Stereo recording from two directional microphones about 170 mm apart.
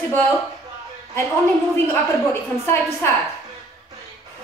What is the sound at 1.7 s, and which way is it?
A woman's voice, 15° left (ahead or behind).